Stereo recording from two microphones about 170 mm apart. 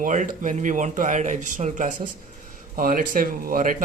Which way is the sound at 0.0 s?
50° right (ahead or behind).